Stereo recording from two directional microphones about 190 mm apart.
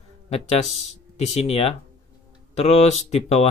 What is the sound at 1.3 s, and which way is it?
Speech, 35° left (ahead or behind).